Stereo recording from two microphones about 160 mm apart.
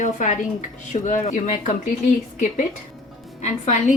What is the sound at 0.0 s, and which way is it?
A woman's voice, 50° left (ahead or behind).